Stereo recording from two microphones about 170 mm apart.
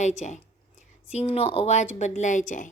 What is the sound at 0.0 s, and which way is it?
A woman's voice, 45° left (ahead or behind).